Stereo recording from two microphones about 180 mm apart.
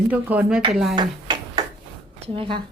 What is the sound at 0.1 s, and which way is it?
Speech, 10° right (ahead or behind).